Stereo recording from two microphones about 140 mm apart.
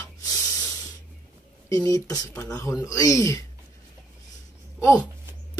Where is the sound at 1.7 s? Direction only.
25° left (ahead or behind).